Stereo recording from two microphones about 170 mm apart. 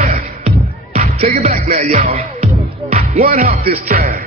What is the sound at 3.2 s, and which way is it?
Music, 50° right (ahead or behind).